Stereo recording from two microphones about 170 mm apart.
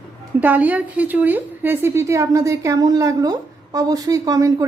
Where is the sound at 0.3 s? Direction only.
10° right (ahead or behind).